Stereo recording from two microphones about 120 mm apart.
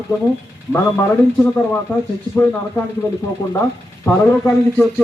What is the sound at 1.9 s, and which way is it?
Speech, 15° left (ahead or behind).